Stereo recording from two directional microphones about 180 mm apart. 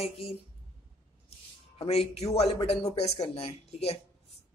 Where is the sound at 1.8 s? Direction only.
35° left (ahead or behind).